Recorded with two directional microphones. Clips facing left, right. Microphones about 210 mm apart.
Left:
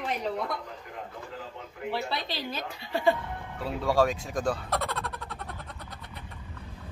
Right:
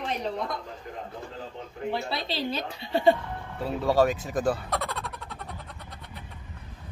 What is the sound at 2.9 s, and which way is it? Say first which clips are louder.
Music: right 4 dB; 20° right (ahead or behind).